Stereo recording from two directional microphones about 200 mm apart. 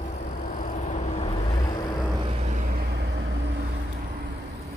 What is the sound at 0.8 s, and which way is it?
Vehicle, 35° left (ahead or behind).